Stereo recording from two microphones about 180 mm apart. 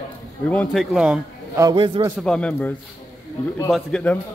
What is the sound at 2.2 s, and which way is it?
Speech, 5° left (ahead or behind).